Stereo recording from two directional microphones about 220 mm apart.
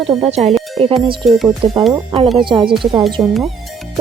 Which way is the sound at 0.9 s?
Centre (ahead or behind).